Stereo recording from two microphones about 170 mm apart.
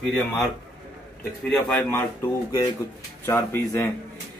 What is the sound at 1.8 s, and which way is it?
Speech, 15° left (ahead or behind).